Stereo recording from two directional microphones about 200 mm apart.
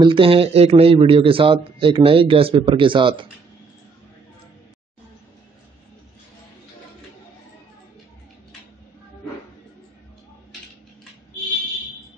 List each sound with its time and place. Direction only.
0.0 s a man's voice: 25° right (ahead or behind)